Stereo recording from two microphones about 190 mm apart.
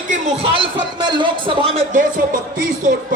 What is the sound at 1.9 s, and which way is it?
Speech, 45° right (ahead or behind).